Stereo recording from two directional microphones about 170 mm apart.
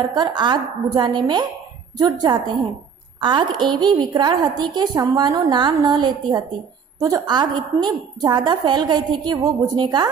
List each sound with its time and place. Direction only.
0.1 s a woman's voice: 25° right (ahead or behind)